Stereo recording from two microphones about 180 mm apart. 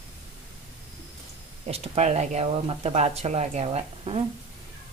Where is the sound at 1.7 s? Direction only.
35° right (ahead or behind).